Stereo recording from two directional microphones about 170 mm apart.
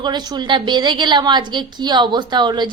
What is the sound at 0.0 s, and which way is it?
A woman's voice, 25° right (ahead or behind).